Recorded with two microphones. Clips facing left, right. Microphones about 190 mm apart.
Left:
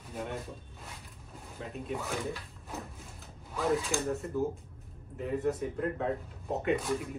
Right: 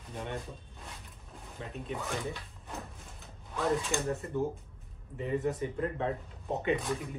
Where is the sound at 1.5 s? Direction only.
Centre (ahead or behind).